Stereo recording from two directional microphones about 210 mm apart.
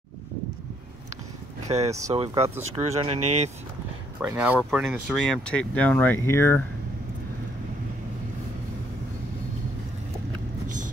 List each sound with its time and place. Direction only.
1.9 s speech: 15° right (ahead or behind)
2.1 s speech: 25° right (ahead or behind)
4.2 s speech: 5° right (ahead or behind); by 6.6 s 10° left (ahead or behind)